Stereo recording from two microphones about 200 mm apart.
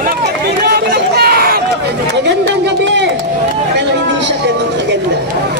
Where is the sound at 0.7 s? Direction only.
50° right (ahead or behind).